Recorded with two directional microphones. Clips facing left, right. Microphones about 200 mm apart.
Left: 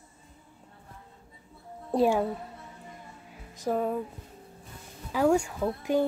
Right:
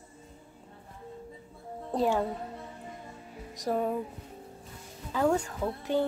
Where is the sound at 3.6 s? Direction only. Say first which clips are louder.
Left 1 dB; centre (ahead or behind).